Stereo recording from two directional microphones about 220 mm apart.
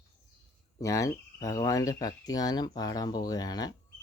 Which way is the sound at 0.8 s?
15° left (ahead or behind).